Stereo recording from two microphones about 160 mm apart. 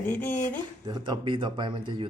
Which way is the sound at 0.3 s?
55° left (ahead or behind).